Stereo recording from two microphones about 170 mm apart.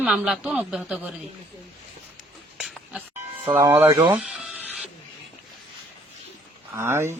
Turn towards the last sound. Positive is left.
turn(degrees=-15)  # may be behind; listen again after turning